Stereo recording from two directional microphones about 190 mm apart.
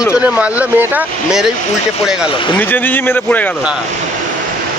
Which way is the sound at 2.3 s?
25° left (ahead or behind).